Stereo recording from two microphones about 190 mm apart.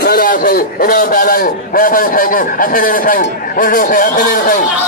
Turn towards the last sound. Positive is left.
turn(degrees=50)  # may be behind; listen again after turning